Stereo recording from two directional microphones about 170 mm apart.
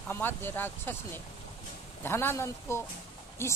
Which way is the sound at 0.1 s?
10° left (ahead or behind).